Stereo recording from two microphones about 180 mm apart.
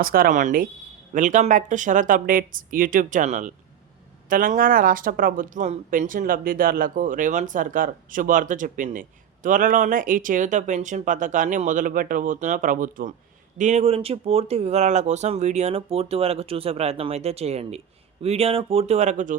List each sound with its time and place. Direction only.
0.0 s speech: 55° right (ahead or behind)